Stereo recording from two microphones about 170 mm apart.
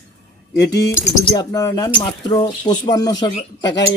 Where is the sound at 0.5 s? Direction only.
20° left (ahead or behind).